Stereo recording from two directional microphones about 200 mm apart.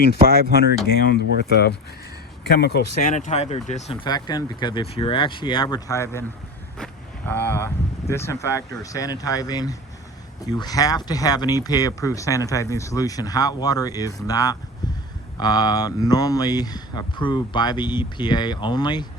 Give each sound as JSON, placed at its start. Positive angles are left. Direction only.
{"t": 0.9, "sound": "speech", "side_deg": 55}
{"t": 4.0, "sound": "speech", "side_deg": 20}
{"t": 6.7, "sound": "vehicle", "side_deg": 5}
{"t": 8.0, "sound": "speech", "side_deg": 15}